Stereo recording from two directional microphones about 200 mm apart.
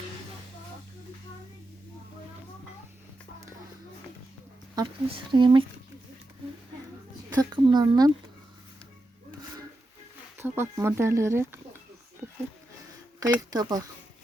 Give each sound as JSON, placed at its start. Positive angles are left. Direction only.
{"t": 4.7, "sound": "speech", "side_deg": -20}
{"t": 7.3, "sound": "speech", "side_deg": -20}
{"t": 10.3, "sound": "speech", "side_deg": -10}
{"t": 13.1, "sound": "speech", "side_deg": -20}